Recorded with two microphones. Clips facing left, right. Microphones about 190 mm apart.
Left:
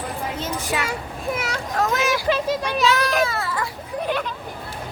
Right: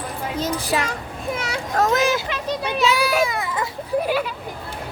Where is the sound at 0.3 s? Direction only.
35° right (ahead or behind).